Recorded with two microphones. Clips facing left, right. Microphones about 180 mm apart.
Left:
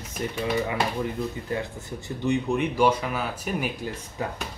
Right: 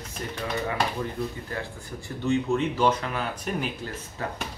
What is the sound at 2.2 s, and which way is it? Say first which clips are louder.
Speech: even; 15° left (ahead or behind).